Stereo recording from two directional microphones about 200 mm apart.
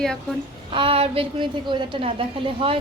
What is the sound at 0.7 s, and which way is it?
A woman's voice, 25° right (ahead or behind).